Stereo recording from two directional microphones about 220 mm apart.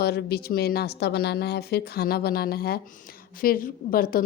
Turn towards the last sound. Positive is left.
turn(degrees=40)  # may be behind; listen again after turning